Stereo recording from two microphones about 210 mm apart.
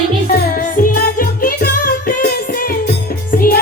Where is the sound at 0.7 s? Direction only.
40° left (ahead or behind).